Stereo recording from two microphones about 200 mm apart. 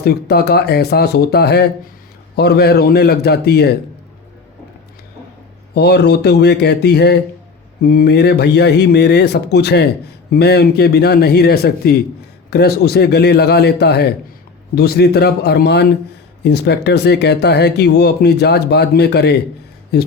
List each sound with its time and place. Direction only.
0.0 s speech: 55° left (ahead or behind)
5.7 s speech: 55° left (ahead or behind)